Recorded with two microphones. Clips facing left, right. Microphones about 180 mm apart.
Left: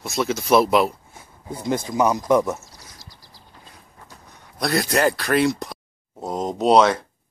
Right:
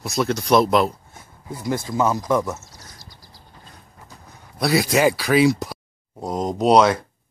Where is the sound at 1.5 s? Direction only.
20° left (ahead or behind).